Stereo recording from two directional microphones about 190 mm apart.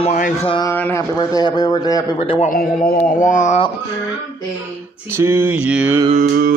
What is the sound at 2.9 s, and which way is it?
Carnatic music, 40° left (ahead or behind).